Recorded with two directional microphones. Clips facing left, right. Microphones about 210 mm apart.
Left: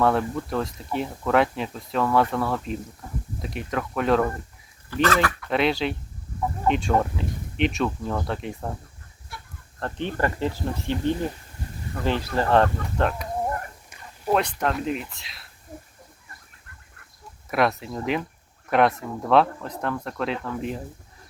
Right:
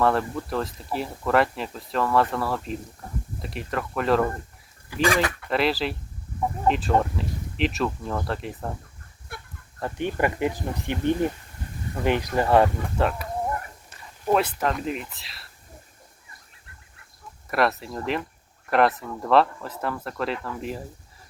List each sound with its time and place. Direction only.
0.0 s speech: centre (ahead or behind)
5.0 s speech: 15° right (ahead or behind)
5.5 s speech: centre (ahead or behind)
9.3 s chicken: 55° right (ahead or behind)
9.8 s speech: 15° right (ahead or behind)
14.3 s speech: centre (ahead or behind)
17.5 s speech: centre (ahead or behind)